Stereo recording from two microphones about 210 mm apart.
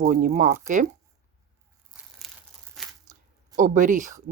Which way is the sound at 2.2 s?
Centre (ahead or behind).